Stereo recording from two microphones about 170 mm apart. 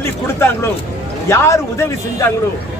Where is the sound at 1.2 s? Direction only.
15° left (ahead or behind).